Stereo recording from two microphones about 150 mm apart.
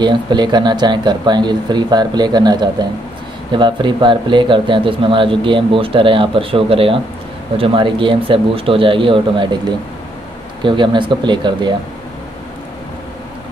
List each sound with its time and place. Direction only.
0.0 s speech: 30° right (ahead or behind)